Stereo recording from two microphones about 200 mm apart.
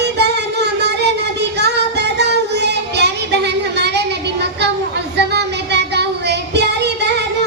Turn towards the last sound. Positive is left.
turn(degrees=-60)  # may be behind; listen again after turning